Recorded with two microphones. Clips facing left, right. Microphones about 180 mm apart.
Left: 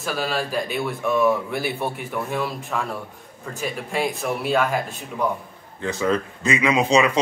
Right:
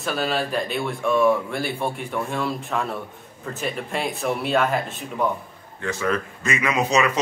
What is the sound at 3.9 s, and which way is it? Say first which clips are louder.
Speech: left 2 dB; centre (ahead or behind).